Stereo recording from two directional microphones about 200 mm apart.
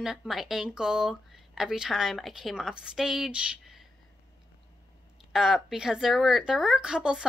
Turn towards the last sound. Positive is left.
turn(degrees=-5)  # may be behind; listen again after turning